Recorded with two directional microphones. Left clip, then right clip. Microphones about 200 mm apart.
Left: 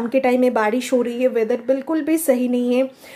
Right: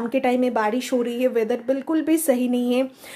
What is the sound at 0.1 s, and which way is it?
A woman's voice, 5° right (ahead or behind).